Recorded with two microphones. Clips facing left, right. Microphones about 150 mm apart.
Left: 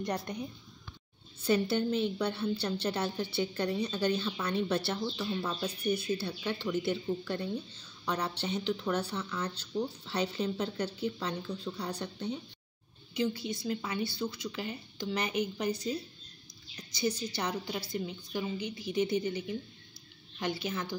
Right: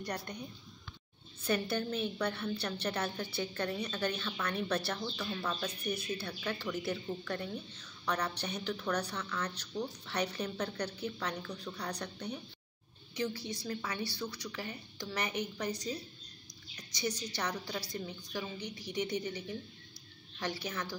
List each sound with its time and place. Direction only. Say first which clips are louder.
0.0 s speech: left 5 dB; 25° left (ahead or behind)
1.4 s speech: left 5 dB; 25° left (ahead or behind)
9.1 s a woman's voice: left 3 dB; 5° left (ahead or behind)
9.4 s speech: left 4 dB; 30° left (ahead or behind)
17.0 s a woman's voice: left 4 dB; 25° left (ahead or behind)